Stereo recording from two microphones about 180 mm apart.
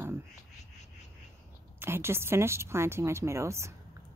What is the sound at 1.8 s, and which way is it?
Speech, 15° right (ahead or behind).